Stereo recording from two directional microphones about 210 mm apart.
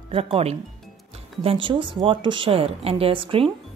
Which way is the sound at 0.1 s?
25° right (ahead or behind).